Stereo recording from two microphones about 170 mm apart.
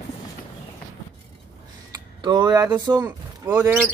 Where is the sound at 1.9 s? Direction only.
25° right (ahead or behind).